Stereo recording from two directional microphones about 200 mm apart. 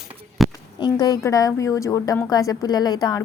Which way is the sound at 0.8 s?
20° left (ahead or behind).